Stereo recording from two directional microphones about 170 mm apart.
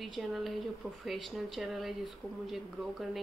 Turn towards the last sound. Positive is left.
turn(degrees=0)  # may be behind; listen again after turning